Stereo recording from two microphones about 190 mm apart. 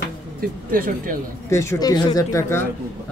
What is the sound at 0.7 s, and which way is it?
Speech, 45° right (ahead or behind).